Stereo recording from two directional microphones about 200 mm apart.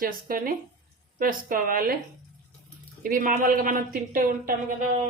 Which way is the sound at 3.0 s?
45° right (ahead or behind).